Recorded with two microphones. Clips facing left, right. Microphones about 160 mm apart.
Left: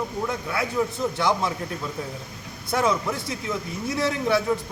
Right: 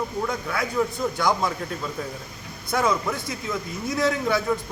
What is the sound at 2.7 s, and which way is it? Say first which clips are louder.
A man's voice: even; 30° left (ahead or behind).